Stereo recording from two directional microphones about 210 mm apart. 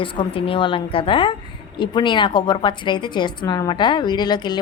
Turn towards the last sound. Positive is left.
turn(degrees=20)  # may be behind; listen again after turning